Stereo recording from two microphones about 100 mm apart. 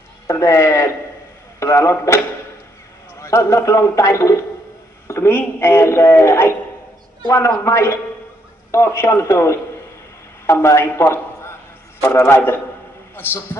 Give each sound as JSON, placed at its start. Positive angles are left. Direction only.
{"t": 0.3, "sound": "a man's voice", "side_deg": 30}